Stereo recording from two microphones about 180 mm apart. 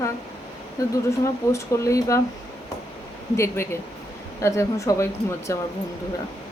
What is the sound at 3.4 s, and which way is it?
Speech, 15° left (ahead or behind).